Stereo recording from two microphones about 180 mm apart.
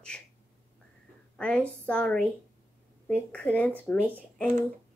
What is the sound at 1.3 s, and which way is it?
Speech, 5° left (ahead or behind).